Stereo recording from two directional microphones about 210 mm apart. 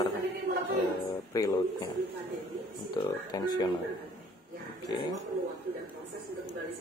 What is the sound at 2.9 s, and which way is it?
Speech, 20° left (ahead or behind).